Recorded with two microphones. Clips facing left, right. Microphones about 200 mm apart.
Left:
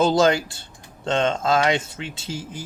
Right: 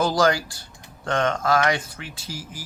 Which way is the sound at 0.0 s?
25° left (ahead or behind).